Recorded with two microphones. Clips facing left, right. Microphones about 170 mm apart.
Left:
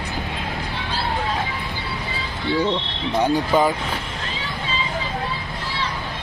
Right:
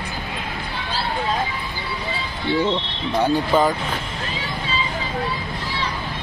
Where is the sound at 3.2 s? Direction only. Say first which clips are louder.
Even; 15° left (ahead or behind).